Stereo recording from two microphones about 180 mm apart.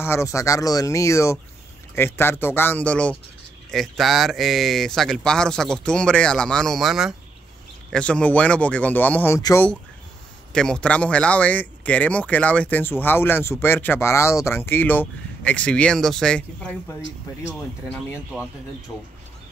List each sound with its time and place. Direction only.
0.0 s speech: 15° left (ahead or behind)
10.5 s speech: 5° left (ahead or behind)
18.1 s speech: 5° right (ahead or behind)